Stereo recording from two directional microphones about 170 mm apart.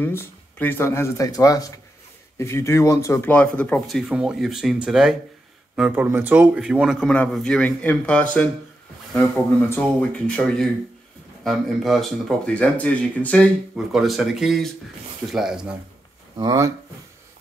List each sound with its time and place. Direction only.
0.0 s speech: 10° left (ahead or behind)
16.3 s speech: 20° right (ahead or behind)